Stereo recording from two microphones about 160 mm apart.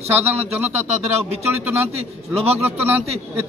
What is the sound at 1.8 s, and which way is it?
Speech, 40° right (ahead or behind).